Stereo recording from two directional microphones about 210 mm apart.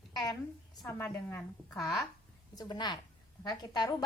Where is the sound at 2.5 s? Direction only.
20° left (ahead or behind).